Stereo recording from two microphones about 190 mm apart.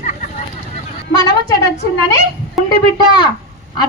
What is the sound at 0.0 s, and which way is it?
Vehicle, 40° left (ahead or behind).